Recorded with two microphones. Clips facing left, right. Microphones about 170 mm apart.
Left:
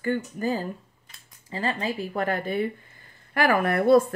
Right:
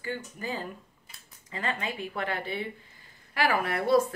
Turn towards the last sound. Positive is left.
turn(degrees=50)  # may be behind; listen again after turning